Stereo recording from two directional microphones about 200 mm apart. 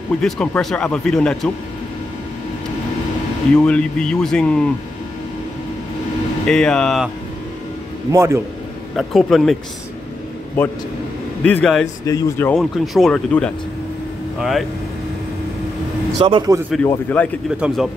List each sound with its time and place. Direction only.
0.2 s speech: centre (ahead or behind)
3.5 s speech: 5° left (ahead or behind)
6.4 s speech: 5° left (ahead or behind)
8.1 s a man's voice: 15° right (ahead or behind)
8.9 s speech: centre (ahead or behind)
11.4 s speech: 5° left (ahead or behind)
16.2 s a man's voice: 25° right (ahead or behind)
16.8 s speech: 10° left (ahead or behind)
17.6 s speech: centre (ahead or behind)